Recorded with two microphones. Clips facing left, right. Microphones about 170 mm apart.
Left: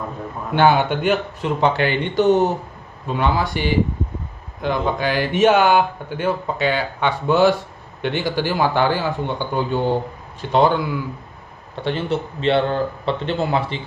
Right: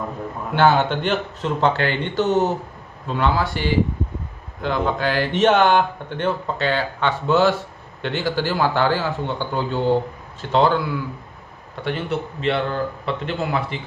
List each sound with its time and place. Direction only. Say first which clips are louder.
0.6 s speech: left 1 dB; 15° left (ahead or behind)
11.7 s speech: left 2 dB; 25° left (ahead or behind)